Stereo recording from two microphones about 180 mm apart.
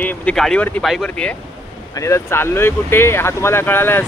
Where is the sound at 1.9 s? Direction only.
15° left (ahead or behind).